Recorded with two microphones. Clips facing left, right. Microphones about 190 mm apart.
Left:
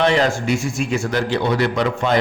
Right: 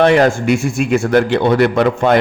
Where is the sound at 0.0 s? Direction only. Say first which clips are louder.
Right 6 dB; 55° right (ahead or behind).